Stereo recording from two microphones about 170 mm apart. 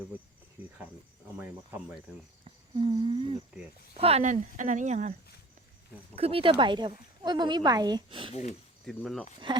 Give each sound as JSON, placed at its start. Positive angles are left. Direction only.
{"t": 2.4, "sound": "a sound", "side_deg": -30}
{"t": 3.9, "sound": "speech", "side_deg": -35}
{"t": 6.1, "sound": "a woman's voice", "side_deg": -35}
{"t": 8.9, "sound": "speech", "side_deg": 0}
{"t": 9.5, "sound": "a woman's voice", "side_deg": -30}